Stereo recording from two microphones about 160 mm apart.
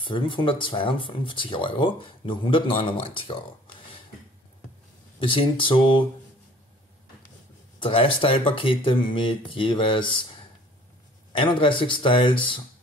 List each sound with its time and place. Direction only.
0.0 s speech: 30° left (ahead or behind)
5.2 s speech: 35° left (ahead or behind)
7.8 s speech: 35° left (ahead or behind)